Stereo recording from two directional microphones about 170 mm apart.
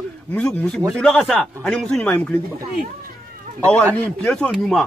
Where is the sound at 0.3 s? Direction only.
5° left (ahead or behind).